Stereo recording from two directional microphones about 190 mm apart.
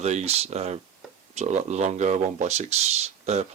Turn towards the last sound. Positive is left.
turn(degrees=-35)  # may be behind; listen again after turning